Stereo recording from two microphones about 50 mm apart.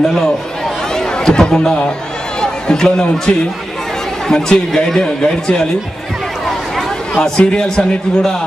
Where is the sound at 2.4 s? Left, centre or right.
Centre.